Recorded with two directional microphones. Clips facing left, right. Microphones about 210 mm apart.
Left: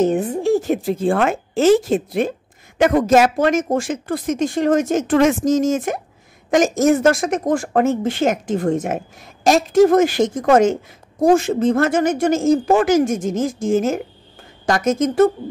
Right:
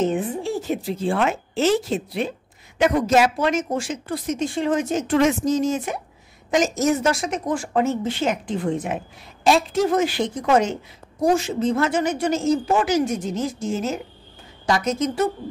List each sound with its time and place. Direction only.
0.0 s speech: 45° left (ahead or behind)